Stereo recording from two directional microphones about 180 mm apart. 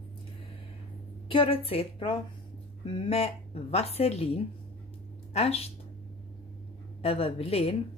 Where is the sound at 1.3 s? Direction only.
30° left (ahead or behind).